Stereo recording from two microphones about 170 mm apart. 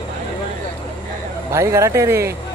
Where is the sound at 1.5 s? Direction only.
15° right (ahead or behind).